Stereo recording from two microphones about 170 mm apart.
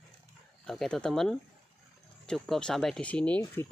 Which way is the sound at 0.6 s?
Centre (ahead or behind).